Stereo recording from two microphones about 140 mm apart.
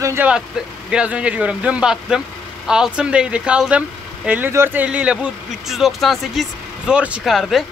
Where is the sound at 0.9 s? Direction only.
10° right (ahead or behind).